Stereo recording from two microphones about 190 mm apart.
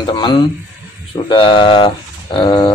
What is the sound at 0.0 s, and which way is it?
Speech, 25° left (ahead or behind).